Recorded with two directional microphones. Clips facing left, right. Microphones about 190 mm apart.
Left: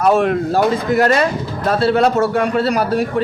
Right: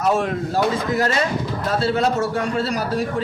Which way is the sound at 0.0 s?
60° left (ahead or behind).